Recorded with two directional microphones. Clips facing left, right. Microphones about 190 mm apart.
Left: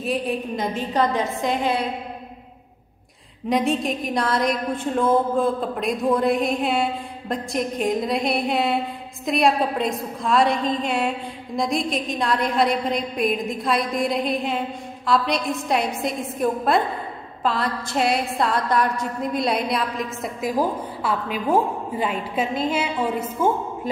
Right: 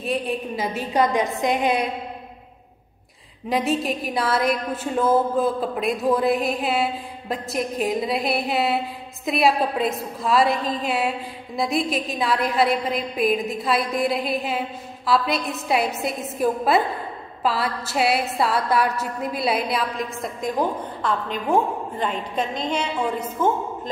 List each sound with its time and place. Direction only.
0.0 s a woman's voice: centre (ahead or behind); by 1.9 s 15° right (ahead or behind)
3.4 s a woman's voice: centre (ahead or behind)